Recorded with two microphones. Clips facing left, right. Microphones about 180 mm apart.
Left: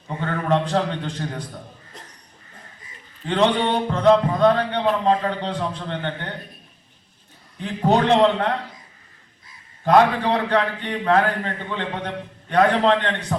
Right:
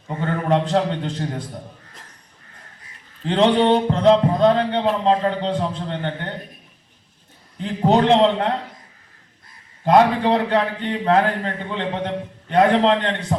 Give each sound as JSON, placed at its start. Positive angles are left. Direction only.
{"t": 0.4, "sound": "speech", "side_deg": -20}
{"t": 3.2, "sound": "speech", "side_deg": -30}
{"t": 7.6, "sound": "speech", "side_deg": -20}
{"t": 9.8, "sound": "speech", "side_deg": -20}